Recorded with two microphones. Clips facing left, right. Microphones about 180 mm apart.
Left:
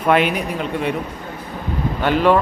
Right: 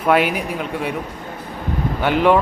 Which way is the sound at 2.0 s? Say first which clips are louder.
Even; 15° right (ahead or behind).